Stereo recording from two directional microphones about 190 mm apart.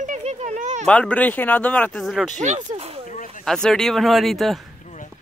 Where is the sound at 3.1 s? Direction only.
45° left (ahead or behind).